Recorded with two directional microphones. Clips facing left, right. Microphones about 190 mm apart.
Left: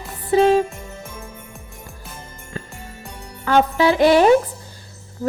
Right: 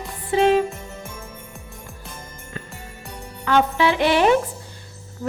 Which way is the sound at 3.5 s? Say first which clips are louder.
Left 2 dB; 40° left (ahead or behind).